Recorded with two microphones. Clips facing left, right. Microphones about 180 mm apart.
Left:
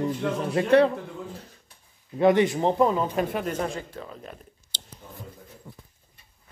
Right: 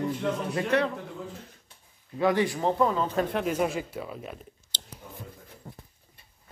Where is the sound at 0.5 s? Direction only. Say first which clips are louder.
Left 9 dB; 30° left (ahead or behind).